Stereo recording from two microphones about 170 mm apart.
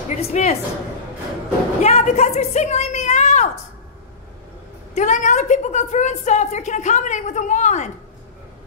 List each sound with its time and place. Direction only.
0.1 s a woman's voice: 40° left (ahead or behind)
1.8 s a woman's voice: 40° left (ahead or behind)
4.9 s a woman's voice: 45° left (ahead or behind)